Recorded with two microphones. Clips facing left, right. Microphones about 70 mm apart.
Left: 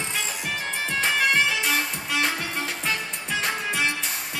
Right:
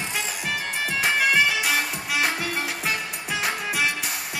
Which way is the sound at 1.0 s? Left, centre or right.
Centre.